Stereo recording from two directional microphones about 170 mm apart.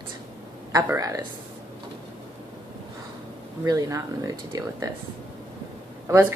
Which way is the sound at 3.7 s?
20° right (ahead or behind).